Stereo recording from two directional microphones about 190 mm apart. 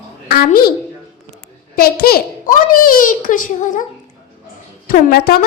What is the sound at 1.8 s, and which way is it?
A child's voice, 55° left (ahead or behind).